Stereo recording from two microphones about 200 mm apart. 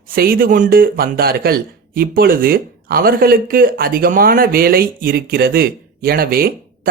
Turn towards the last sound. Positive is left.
turn(degrees=-50)  # may be behind; listen again after turning